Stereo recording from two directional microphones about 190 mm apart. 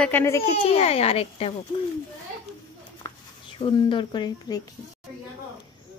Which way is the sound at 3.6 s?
25° left (ahead or behind).